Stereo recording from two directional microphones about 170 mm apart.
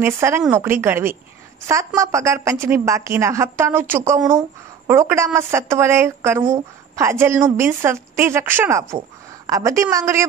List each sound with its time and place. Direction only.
0.0 s a woman's voice: 15° right (ahead or behind)